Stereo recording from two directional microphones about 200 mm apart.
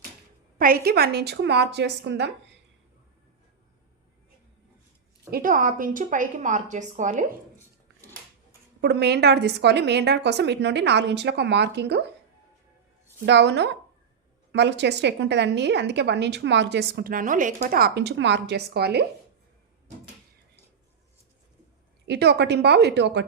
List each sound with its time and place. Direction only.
0.6 s a woman's voice: 45° right (ahead or behind)
5.3 s a woman's voice: 45° right (ahead or behind)
8.8 s a woman's voice: 55° right (ahead or behind)
13.2 s a woman's voice: 60° right (ahead or behind)
22.0 s a woman's voice: 55° right (ahead or behind)